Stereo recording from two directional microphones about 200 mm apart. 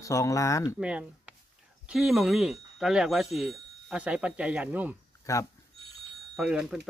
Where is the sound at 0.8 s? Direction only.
5° right (ahead or behind).